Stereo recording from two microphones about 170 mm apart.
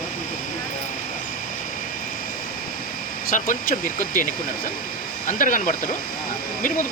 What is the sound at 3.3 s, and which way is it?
Speech, 50° left (ahead or behind).